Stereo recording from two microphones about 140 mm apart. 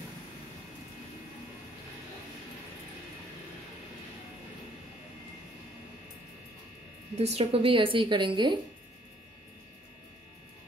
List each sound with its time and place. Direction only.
7.2 s a woman's voice: 45° right (ahead or behind)